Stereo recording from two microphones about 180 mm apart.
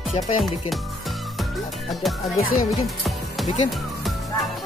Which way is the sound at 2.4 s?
50° left (ahead or behind).